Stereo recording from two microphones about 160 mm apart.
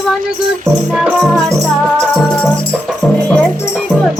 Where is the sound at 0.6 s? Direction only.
Centre (ahead or behind).